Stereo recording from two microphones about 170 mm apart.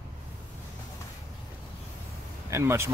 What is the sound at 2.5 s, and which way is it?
Speech, 15° right (ahead or behind).